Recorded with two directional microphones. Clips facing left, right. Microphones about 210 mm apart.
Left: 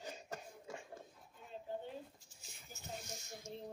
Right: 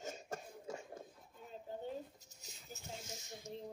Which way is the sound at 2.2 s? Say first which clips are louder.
Right 2 dB; 40° right (ahead or behind).